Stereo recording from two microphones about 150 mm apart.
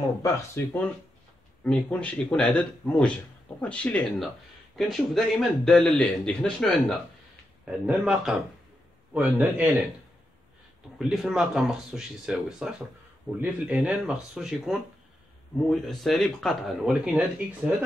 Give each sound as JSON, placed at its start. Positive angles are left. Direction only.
{"t": 0.2, "sound": "a man's voice", "side_deg": 15}
{"t": 7.6, "sound": "a man's voice", "side_deg": -5}
{"t": 11.0, "sound": "a man's voice", "side_deg": -5}